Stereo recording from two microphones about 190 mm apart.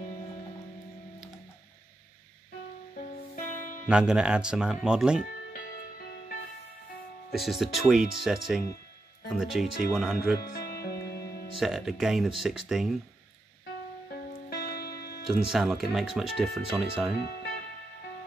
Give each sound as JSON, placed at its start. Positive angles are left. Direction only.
{"t": 2.9, "sound": "music", "side_deg": 45}
{"t": 3.9, "sound": "speech", "side_deg": -5}
{"t": 5.2, "sound": "music", "side_deg": 50}
{"t": 7.3, "sound": "speech", "side_deg": 0}
{"t": 10.5, "sound": "music", "side_deg": 55}
{"t": 11.6, "sound": "speech", "side_deg": 0}
{"t": 14.5, "sound": "music", "side_deg": 55}
{"t": 15.2, "sound": "speech", "side_deg": 0}
{"t": 17.2, "sound": "music", "side_deg": 55}